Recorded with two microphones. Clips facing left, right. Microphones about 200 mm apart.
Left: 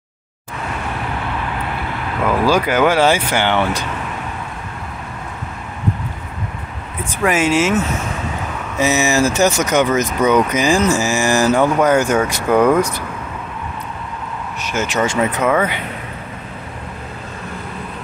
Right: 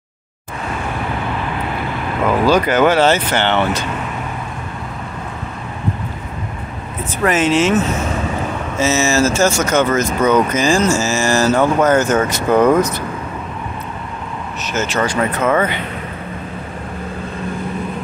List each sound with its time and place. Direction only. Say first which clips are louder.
2.4 s speech: right 2 dB; 10° left (ahead or behind)
7.2 s speech: right 1 dB; 10° left (ahead or behind)
14.6 s speech: even; 15° left (ahead or behind)
15.4 s speech: right 2 dB; 5° left (ahead or behind)